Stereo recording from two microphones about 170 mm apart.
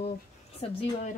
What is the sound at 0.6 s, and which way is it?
Speech, 35° left (ahead or behind).